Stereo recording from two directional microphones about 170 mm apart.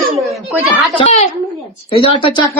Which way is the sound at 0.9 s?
40° left (ahead or behind).